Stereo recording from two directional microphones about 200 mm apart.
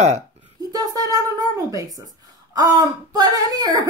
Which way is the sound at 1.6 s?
15° right (ahead or behind).